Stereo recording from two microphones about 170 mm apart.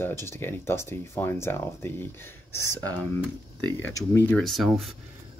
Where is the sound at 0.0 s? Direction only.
15° left (ahead or behind).